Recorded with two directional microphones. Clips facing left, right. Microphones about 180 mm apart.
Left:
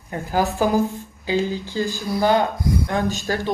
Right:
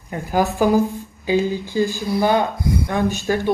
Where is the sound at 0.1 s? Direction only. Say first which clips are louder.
Right 2 dB; 15° right (ahead or behind).